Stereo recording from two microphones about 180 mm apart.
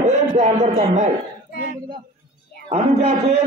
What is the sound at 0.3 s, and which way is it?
Speech, 35° right (ahead or behind).